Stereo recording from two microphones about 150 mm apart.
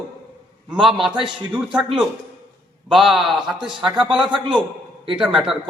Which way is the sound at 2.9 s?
Centre (ahead or behind).